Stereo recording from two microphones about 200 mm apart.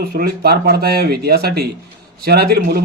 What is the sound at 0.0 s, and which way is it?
A man's voice, 50° right (ahead or behind).